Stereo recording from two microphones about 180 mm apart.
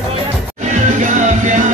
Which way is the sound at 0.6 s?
45° right (ahead or behind).